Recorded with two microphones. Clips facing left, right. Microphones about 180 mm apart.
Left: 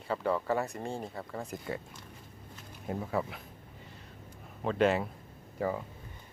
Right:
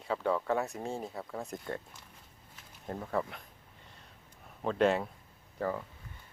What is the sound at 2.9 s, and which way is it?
Speech, 5° left (ahead or behind).